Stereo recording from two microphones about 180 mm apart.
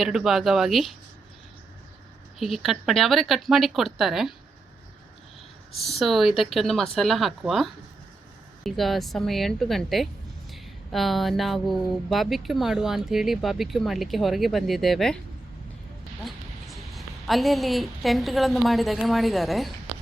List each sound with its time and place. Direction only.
0.0 s speech: centre (ahead or behind)
2.4 s speech: centre (ahead or behind)
5.7 s speech: centre (ahead or behind)
16.2 s a woman's voice: centre (ahead or behind)